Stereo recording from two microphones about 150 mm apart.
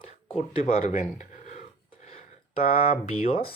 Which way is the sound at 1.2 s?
50° left (ahead or behind).